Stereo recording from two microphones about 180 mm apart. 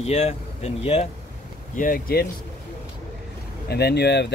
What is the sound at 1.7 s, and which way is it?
Speech, 50° left (ahead or behind).